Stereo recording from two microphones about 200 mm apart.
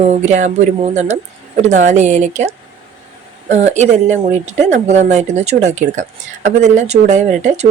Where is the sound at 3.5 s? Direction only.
35° right (ahead or behind).